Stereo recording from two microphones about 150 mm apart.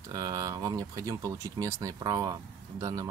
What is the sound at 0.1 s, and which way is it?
Speech, 25° right (ahead or behind).